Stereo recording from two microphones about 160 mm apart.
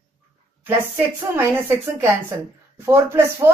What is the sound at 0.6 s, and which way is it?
Speech, 15° right (ahead or behind).